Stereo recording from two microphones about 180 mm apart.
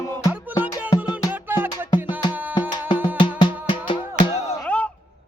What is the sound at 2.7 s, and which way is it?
Music, 25° left (ahead or behind).